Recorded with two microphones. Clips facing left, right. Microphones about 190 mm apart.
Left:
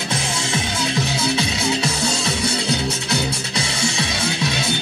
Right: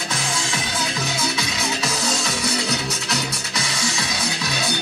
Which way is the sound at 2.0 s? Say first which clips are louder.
Left 2 dB; 30° left (ahead or behind).